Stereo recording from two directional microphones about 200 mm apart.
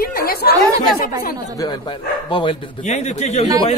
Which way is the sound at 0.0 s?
50° left (ahead or behind).